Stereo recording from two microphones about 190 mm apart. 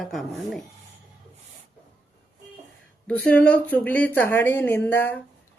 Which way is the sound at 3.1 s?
5° left (ahead or behind).